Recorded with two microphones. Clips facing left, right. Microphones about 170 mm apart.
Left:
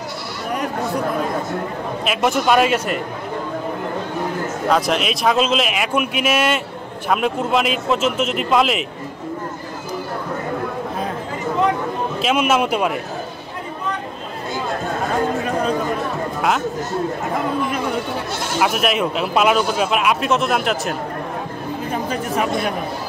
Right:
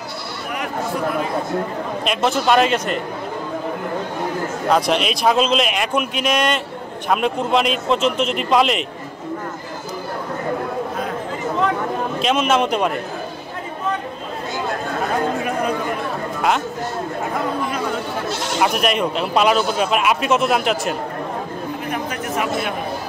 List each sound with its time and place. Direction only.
2.0 s speech: 10° left (ahead or behind)
4.6 s speech: centre (ahead or behind)
12.2 s speech: 5° left (ahead or behind)
18.6 s speech: centre (ahead or behind)
21.9 s chatter: 30° left (ahead or behind)